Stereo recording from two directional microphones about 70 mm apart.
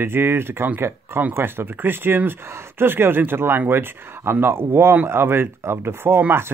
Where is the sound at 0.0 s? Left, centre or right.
Right.